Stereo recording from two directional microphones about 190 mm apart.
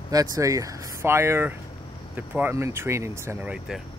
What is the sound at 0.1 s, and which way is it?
Speech, 20° right (ahead or behind).